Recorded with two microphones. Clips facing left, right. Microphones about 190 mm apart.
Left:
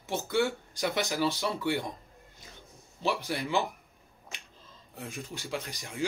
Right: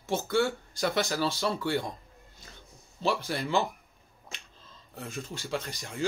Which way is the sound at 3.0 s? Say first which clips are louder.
Right 1 dB; 15° left (ahead or behind).